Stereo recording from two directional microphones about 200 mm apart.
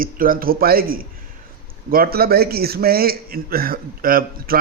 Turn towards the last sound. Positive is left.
turn(degrees=-45)  # may be behind; listen again after turning